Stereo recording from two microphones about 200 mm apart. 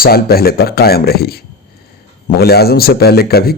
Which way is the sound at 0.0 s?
50° left (ahead or behind).